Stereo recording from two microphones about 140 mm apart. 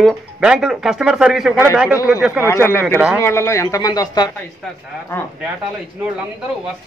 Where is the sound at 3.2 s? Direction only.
20° left (ahead or behind).